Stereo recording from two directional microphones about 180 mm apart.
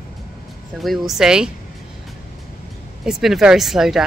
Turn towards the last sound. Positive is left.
turn(degrees=0)  # may be behind; listen again after turning